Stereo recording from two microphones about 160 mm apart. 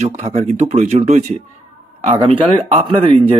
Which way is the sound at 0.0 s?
45° right (ahead or behind).